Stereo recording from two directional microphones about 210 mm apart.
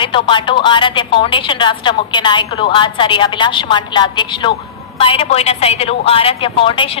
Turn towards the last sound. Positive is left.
turn(degrees=25)  # may be behind; listen again after turning